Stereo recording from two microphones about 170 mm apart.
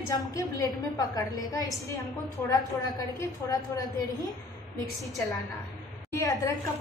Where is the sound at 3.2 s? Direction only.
20° left (ahead or behind).